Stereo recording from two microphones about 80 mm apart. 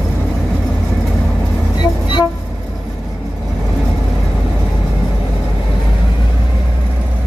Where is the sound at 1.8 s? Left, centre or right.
Left.